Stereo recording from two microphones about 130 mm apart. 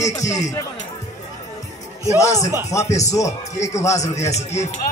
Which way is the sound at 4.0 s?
60° left (ahead or behind).